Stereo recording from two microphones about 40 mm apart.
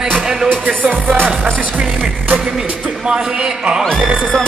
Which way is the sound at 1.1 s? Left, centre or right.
Right.